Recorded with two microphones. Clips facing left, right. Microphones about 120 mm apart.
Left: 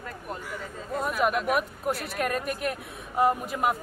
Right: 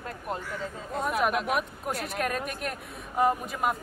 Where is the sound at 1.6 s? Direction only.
Centre (ahead or behind).